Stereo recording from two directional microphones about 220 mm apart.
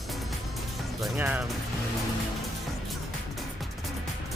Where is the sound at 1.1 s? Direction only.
5° right (ahead or behind).